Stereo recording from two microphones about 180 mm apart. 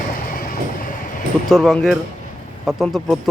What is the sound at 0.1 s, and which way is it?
Train, 50° left (ahead or behind).